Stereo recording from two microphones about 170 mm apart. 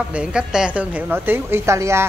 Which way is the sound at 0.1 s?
5° right (ahead or behind).